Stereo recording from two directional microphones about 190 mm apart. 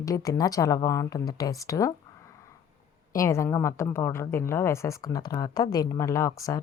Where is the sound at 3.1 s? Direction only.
15° left (ahead or behind).